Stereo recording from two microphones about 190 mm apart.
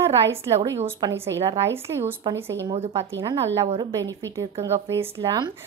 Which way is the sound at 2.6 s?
30° right (ahead or behind).